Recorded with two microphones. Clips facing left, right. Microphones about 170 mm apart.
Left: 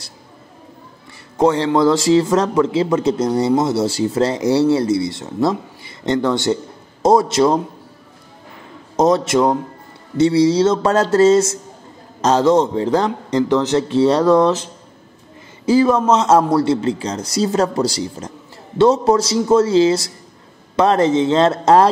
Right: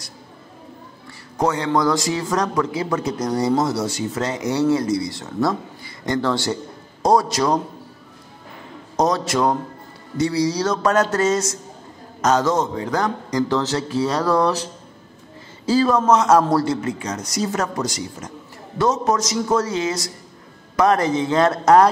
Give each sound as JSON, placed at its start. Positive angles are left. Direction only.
{"t": 1.4, "sound": "speech", "side_deg": 30}
{"t": 8.9, "sound": "speech", "side_deg": 25}